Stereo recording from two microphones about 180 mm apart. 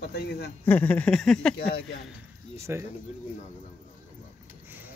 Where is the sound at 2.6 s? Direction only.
15° right (ahead or behind).